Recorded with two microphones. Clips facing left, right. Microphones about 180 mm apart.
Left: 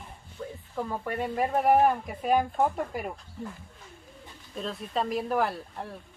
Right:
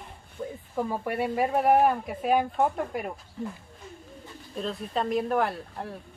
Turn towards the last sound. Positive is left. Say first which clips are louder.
# right 2 dB
turn(degrees=0)  # may be behind; listen again after turning